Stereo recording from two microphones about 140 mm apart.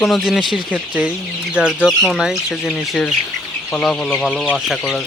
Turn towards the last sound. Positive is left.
turn(degrees=5)  # may be behind; listen again after turning